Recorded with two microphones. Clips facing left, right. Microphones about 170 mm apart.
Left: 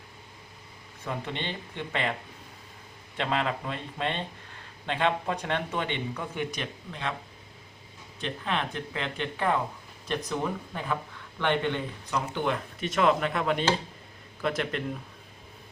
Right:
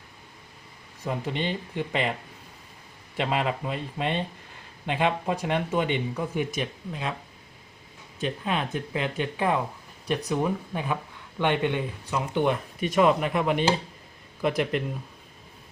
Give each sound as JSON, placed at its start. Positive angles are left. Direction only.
{"t": 1.2, "sound": "speech", "side_deg": -10}
{"t": 3.2, "sound": "speech", "side_deg": -15}
{"t": 8.4, "sound": "speech", "side_deg": -15}